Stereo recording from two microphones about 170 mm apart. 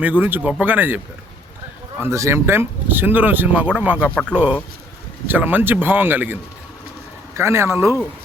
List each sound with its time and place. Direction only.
0.0 s speech: 10° right (ahead or behind)